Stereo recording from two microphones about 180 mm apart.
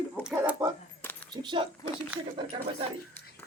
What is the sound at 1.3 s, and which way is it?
Speech, 25° right (ahead or behind).